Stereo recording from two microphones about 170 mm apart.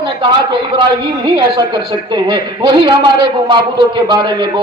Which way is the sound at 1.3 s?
25° right (ahead or behind).